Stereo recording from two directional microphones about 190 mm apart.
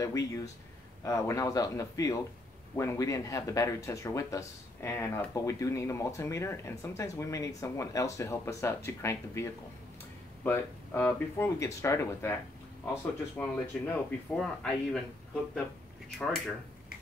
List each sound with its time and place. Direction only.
0.0 s speech: 15° left (ahead or behind)